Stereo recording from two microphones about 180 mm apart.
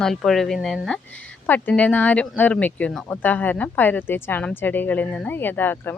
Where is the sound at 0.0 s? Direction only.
Centre (ahead or behind).